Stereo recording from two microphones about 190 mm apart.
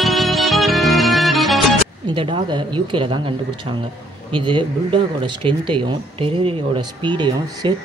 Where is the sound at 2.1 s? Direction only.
25° right (ahead or behind).